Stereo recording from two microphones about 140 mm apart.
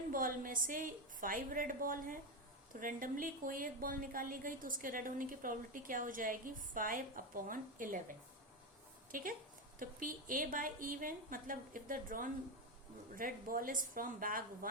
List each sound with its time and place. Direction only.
0.1 s a woman's voice: 80° right
9.1 s a woman's voice: 75° right (ahead or behind)